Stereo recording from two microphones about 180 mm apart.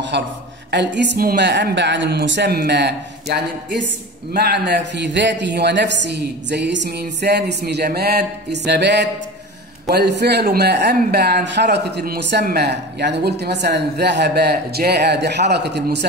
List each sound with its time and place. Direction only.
0.1 s a man's voice: 70° right (ahead or behind)